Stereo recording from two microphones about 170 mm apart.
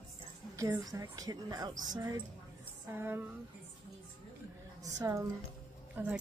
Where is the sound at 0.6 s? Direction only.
20° right (ahead or behind).